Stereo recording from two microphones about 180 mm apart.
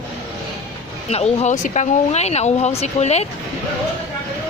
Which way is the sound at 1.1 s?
35° left (ahead or behind).